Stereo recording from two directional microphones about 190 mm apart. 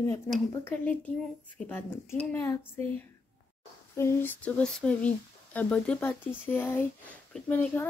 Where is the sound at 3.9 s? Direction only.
10° left (ahead or behind).